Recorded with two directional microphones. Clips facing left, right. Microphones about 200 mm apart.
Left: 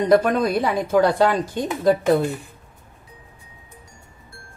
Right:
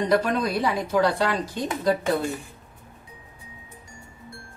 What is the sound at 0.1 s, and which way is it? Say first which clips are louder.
Speech: left 7 dB; 55° left (ahead or behind).